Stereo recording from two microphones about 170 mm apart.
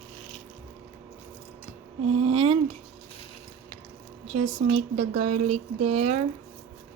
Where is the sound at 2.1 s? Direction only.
35° right (ahead or behind).